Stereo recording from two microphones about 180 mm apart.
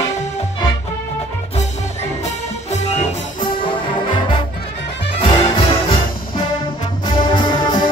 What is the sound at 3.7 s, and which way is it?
Music, 25° left (ahead or behind).